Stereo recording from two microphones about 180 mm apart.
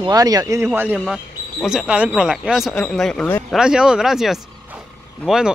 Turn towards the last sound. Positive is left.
turn(degrees=-5)  # may be behind; listen again after turning